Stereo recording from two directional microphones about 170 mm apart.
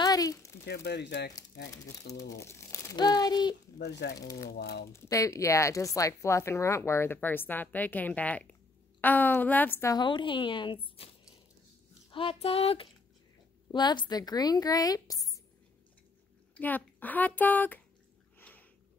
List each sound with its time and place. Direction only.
0.0 s a sound: 20° left (ahead or behind)
0.7 s speech: 80° left
2.2 s a woman's voice: 15° left (ahead or behind)
3.7 s speech: 75° left (ahead or behind)
4.9 s a woman's voice: 20° left (ahead or behind)
12.1 s a woman's voice: 30° left (ahead or behind)
16.5 s speech: 10° left (ahead or behind)
18.4 s a sound: 10° left (ahead or behind)